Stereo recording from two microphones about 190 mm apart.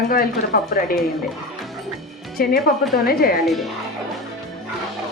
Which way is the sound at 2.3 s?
50° left (ahead or behind).